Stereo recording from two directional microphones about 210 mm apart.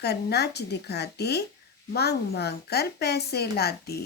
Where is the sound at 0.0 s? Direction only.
50° left (ahead or behind).